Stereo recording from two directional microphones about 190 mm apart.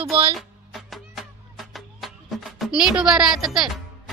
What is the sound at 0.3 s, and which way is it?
Music, centre (ahead or behind).